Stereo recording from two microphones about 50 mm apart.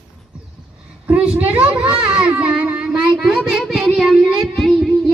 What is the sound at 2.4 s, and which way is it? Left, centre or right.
Child singing, right.